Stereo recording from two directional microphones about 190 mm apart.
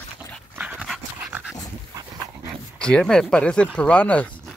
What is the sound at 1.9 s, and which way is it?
Dog, 20° right (ahead or behind).